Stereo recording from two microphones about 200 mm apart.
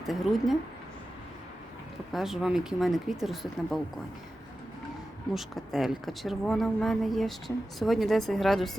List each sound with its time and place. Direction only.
0.0 s speech: centre (ahead or behind)
2.1 s speech: centre (ahead or behind)
5.3 s speech: centre (ahead or behind)